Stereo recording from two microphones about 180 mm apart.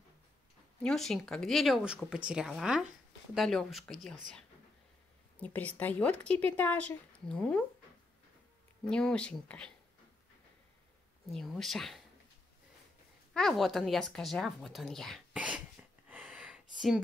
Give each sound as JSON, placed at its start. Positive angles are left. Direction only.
{"t": 0.8, "sound": "speech", "side_deg": 0}
{"t": 5.4, "sound": "speech", "side_deg": 10}
{"t": 8.8, "sound": "speech", "side_deg": 5}
{"t": 11.2, "sound": "speech", "side_deg": 0}
{"t": 13.3, "sound": "speech", "side_deg": 0}
{"t": 16.1, "sound": "a sound", "side_deg": -5}